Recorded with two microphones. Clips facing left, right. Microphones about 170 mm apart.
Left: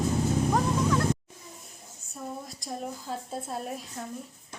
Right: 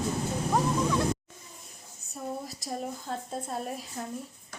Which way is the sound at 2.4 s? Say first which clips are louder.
Right 1 dB; centre (ahead or behind).